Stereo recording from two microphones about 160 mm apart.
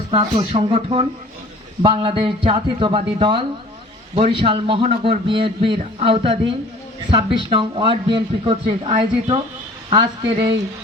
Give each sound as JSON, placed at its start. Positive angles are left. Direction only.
{"t": 0.3, "sound": "a man's voice", "side_deg": -40}